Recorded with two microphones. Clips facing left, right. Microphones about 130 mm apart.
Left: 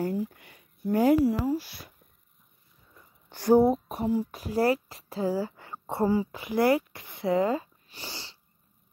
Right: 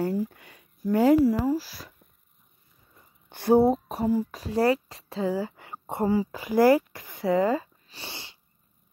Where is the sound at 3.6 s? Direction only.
35° right (ahead or behind).